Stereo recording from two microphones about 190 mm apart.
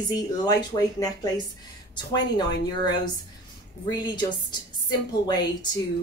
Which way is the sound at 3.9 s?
20° left (ahead or behind).